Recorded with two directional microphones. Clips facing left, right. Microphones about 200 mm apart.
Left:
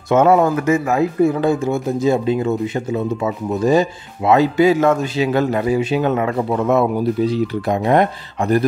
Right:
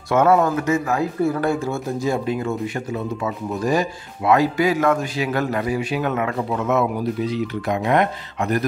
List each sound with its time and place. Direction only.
0.1 s speech: 25° left (ahead or behind)